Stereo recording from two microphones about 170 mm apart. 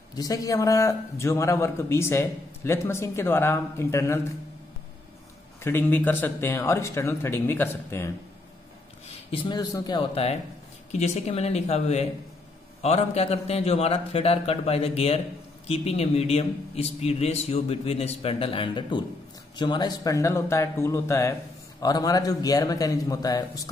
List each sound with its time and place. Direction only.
0.1 s a man's voice: 20° left (ahead or behind)
5.6 s a man's voice: 15° left (ahead or behind)
9.3 s a man's voice: 30° left (ahead or behind)